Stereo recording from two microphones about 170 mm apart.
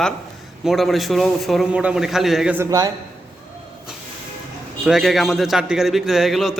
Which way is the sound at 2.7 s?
20° right (ahead or behind).